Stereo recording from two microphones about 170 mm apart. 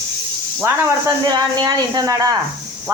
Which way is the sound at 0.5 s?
15° right (ahead or behind).